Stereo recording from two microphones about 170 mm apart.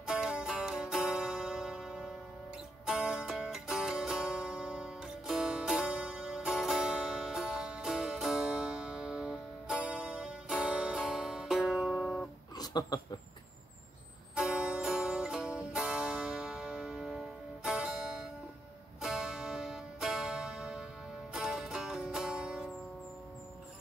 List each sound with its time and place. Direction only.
0.0 s music: 5° right (ahead or behind)
12.5 s speech: 25° left (ahead or behind)
14.3 s music: 5° right (ahead or behind)